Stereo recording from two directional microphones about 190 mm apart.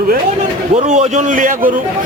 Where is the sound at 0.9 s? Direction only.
40° right (ahead or behind).